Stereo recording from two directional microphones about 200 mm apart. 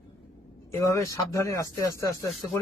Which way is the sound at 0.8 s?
15° left (ahead or behind).